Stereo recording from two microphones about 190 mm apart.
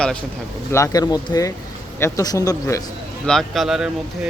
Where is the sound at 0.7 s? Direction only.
15° left (ahead or behind).